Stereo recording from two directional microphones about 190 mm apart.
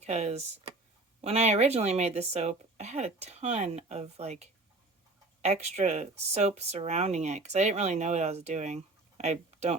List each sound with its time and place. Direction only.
0.0 s speech: 35° right (ahead or behind)